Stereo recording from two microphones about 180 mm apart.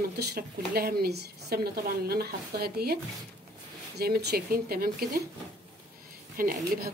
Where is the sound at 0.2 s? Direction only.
60° right (ahead or behind).